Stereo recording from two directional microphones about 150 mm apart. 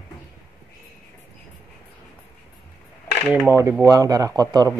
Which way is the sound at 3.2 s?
15° right (ahead or behind).